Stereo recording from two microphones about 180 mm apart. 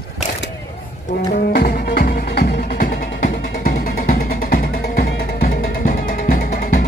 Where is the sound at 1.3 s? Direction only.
55° left (ahead or behind).